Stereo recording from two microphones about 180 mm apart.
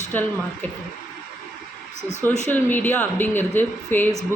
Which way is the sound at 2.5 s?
10° left (ahead or behind).